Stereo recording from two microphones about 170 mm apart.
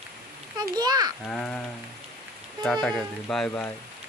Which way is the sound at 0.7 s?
20° right (ahead or behind).